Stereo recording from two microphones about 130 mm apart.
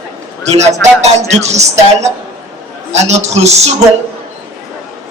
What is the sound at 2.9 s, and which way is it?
Speech, 60° right (ahead or behind).